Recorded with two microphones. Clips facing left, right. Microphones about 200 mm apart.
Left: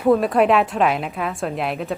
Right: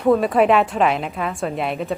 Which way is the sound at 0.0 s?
Centre (ahead or behind).